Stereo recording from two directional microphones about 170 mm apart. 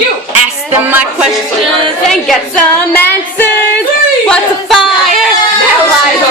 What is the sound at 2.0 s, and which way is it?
A woman's voice, centre (ahead or behind).